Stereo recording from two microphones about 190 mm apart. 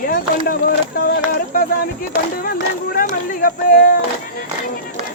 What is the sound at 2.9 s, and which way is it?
Speech, 50° left (ahead or behind).